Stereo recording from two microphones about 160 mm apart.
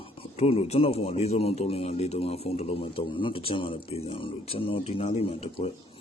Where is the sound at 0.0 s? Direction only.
35° left (ahead or behind).